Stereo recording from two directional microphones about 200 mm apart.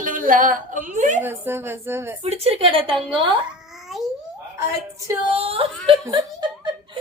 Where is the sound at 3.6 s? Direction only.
Centre (ahead or behind).